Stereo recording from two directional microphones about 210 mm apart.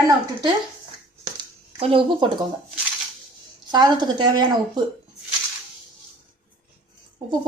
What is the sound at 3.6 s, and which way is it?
A woman's voice, 20° right (ahead or behind).